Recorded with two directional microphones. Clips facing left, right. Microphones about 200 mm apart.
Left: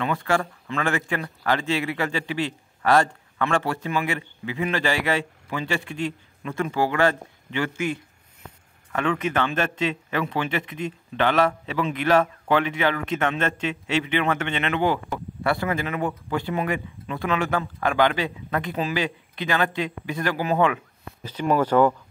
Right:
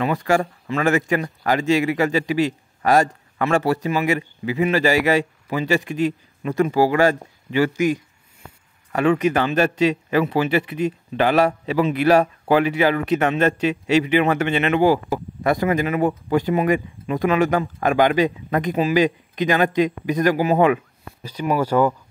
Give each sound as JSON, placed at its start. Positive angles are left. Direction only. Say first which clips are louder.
{"t": 0.1, "sound": "a man's voice", "louder": "right 4 dB", "side_deg": -15}
{"t": 9.5, "sound": "a man's voice", "louder": "right 7 dB", "side_deg": -10}